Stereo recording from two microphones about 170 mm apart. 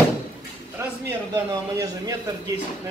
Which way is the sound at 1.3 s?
20° right (ahead or behind).